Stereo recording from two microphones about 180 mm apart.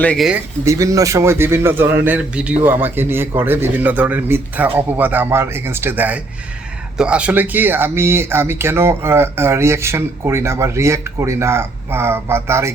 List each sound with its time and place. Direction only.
0.0 s speech: 5° left (ahead or behind)
0.3 s speech: 15° right (ahead or behind)